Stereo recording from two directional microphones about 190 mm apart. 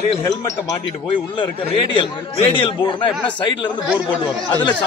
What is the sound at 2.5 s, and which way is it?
Speech, 25° left (ahead or behind).